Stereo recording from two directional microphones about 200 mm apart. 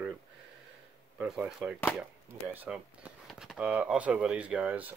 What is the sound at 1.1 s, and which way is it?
Speech, 5° right (ahead or behind).